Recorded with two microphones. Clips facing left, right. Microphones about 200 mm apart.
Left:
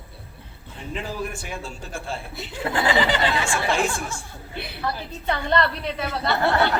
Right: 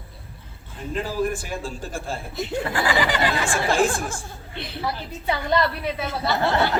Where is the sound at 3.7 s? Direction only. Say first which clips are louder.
Right 3 dB; 50° right (ahead or behind).